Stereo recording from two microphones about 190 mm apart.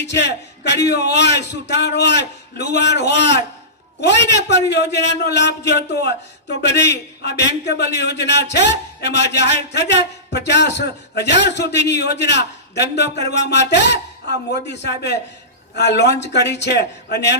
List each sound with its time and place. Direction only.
0.2 s a man's voice: 65° left (ahead or behind)